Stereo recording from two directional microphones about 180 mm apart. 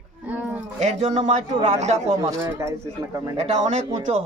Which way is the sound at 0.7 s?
40° right (ahead or behind).